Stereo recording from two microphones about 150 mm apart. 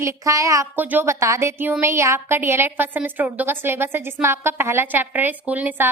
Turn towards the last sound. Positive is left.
turn(degrees=-10)  # may be behind; listen again after turning